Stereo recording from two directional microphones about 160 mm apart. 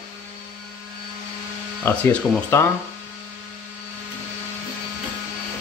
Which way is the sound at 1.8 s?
15° left (ahead or behind).